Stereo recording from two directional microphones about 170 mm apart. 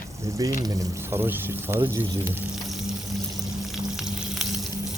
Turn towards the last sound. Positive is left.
turn(degrees=0)  # may be behind; listen again after turning